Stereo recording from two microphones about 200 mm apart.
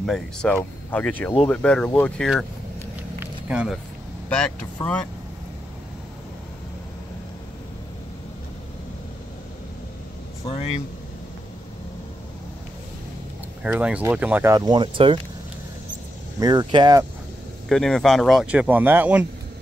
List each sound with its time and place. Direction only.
0.0 s speech: 5° left (ahead or behind)
3.4 s speech: 5° right (ahead or behind)
13.6 s speech: 5° right (ahead or behind); by 15.1 s 25° right (ahead or behind)
16.3 s speech: 20° right (ahead or behind)
17.6 s speech: centre (ahead or behind)